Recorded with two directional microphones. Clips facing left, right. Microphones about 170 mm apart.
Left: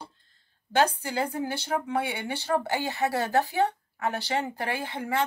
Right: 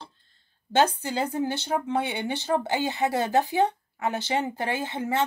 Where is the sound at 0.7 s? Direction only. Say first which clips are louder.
Right 2 dB; 25° right (ahead or behind).